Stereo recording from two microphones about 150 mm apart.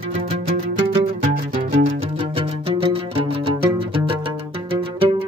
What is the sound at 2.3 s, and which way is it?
Music, 35° right (ahead or behind).